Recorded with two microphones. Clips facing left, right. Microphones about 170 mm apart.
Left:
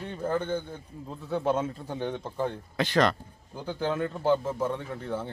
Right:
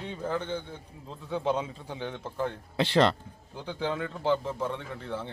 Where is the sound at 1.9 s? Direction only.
10° left (ahead or behind).